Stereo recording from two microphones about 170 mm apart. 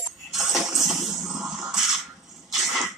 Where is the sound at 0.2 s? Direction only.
Centre (ahead or behind).